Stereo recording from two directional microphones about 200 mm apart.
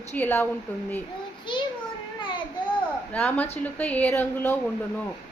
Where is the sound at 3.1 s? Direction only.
5° left (ahead or behind).